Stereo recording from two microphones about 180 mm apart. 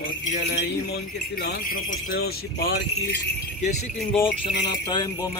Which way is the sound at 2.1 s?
60° left (ahead or behind).